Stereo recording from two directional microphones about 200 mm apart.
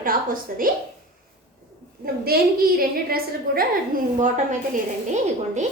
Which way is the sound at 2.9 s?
50° right (ahead or behind).